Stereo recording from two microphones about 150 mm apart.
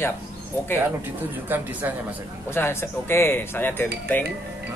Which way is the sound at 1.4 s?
15° right (ahead or behind).